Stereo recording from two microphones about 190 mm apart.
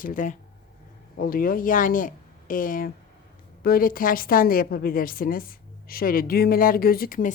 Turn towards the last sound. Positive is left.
turn(degrees=45)  # may be behind; listen again after turning